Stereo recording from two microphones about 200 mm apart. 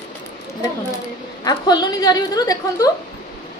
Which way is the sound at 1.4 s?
20° left (ahead or behind).